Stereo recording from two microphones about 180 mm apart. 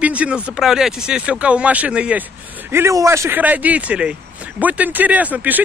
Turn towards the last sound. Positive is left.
turn(degrees=-10)  # may be behind; listen again after turning